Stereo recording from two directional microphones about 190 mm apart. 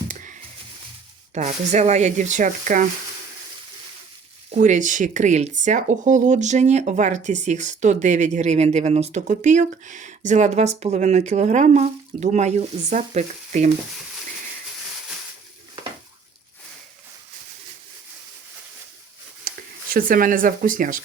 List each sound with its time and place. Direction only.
1.3 s speech: 35° right (ahead or behind)
4.5 s speech: 40° right (ahead or behind)
19.9 s speech: 50° right (ahead or behind)